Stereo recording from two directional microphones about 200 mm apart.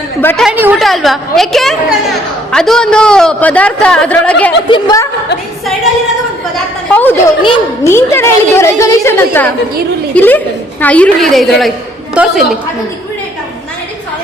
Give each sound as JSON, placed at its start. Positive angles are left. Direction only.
{"t": 0.2, "sound": "a woman's voice", "side_deg": 10}
{"t": 0.4, "sound": "a man's voice", "side_deg": -10}
{"t": 4.7, "sound": "a woman's voice", "side_deg": 20}
{"t": 6.9, "sound": "a woman's voice", "side_deg": 10}